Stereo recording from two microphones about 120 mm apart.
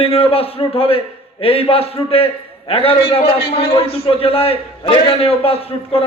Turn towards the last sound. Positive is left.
turn(degrees=55)  # may be behind; listen again after turning